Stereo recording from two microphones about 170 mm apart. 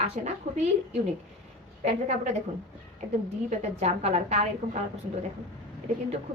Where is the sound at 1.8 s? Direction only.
40° right (ahead or behind).